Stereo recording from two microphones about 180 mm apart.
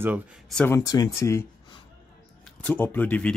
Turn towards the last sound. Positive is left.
turn(degrees=5)  # may be behind; listen again after turning